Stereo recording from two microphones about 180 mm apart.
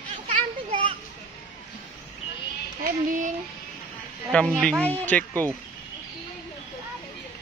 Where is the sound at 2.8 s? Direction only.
50° right (ahead or behind).